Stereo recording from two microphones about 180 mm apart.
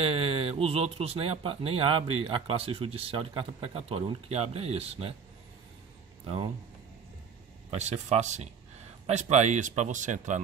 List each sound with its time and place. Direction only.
0.0 s speech: 30° right (ahead or behind)
6.2 s speech: 30° right (ahead or behind)
7.7 s speech: 40° right (ahead or behind)